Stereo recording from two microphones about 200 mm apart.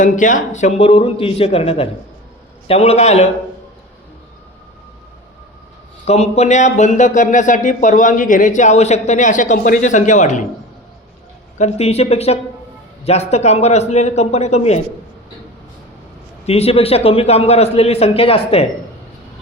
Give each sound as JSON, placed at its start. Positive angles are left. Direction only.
{"t": 0.0, "sound": "speech", "side_deg": 40}
{"t": 6.1, "sound": "speech", "side_deg": 35}
{"t": 11.5, "sound": "speech", "side_deg": 35}
{"t": 16.5, "sound": "speech", "side_deg": 30}